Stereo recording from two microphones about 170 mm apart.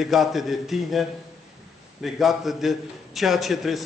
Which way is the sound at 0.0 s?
Centre (ahead or behind).